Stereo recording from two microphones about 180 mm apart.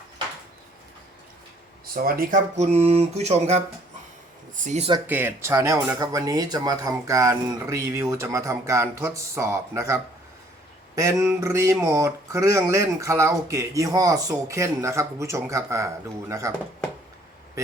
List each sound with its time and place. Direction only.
1.9 s speech: 55° right (ahead or behind)
2.6 s mantra: 35° right (ahead or behind)
4.5 s speech: 40° right (ahead or behind)
5.0 s speech: 10° right (ahead or behind)